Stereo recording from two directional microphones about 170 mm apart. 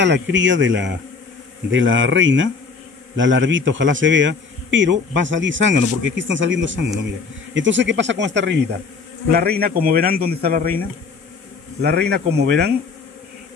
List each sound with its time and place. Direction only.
0.0 s speech: 90° right
9.3 s a man's voice: 65° right (ahead or behind)
11.8 s speech: 75° right (ahead or behind)